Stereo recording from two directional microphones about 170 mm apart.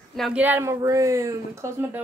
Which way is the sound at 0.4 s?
10° right (ahead or behind).